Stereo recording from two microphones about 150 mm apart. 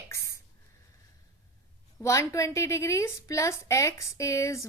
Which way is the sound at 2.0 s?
20° left (ahead or behind).